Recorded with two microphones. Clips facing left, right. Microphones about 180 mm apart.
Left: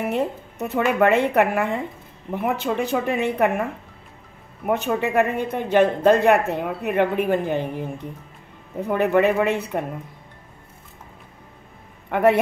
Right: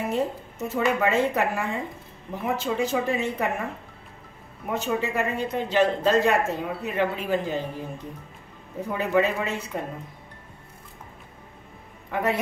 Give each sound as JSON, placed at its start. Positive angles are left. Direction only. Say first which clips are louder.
{"t": 0.1, "sound": "speech", "louder": "left 2 dB", "side_deg": 65}
{"t": 4.6, "sound": "speech", "louder": "left 5 dB", "side_deg": 60}
{"t": 8.8, "sound": "speech", "louder": "left 5 dB", "side_deg": 60}
{"t": 12.1, "sound": "a man's voice", "louder": "left 8 dB", "side_deg": 60}